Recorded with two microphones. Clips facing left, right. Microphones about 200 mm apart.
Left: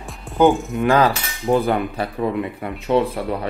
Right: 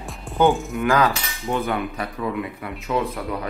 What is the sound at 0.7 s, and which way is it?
Cutlery, 30° left (ahead or behind).